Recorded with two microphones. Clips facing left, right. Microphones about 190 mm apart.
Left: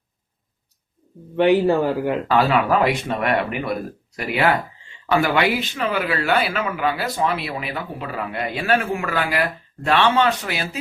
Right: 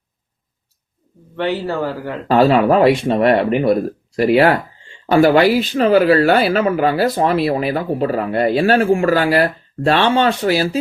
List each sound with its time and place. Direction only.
1.4 s speech: 15° left (ahead or behind)
2.2 s speech: 35° right (ahead or behind)